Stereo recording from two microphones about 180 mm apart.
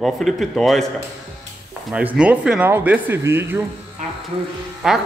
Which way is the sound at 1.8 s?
5° right (ahead or behind).